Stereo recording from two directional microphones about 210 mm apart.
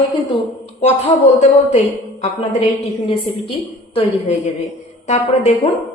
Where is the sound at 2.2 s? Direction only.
30° left (ahead or behind).